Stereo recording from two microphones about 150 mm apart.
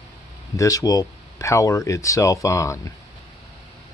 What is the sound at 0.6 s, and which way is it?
Speech, 25° left (ahead or behind).